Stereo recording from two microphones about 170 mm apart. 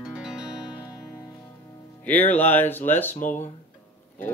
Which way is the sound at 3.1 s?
45° left (ahead or behind).